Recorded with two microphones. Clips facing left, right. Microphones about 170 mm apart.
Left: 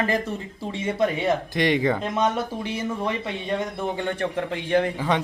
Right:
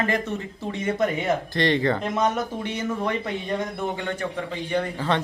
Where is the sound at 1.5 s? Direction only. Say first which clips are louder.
Right 1 dB; 15° left (ahead or behind).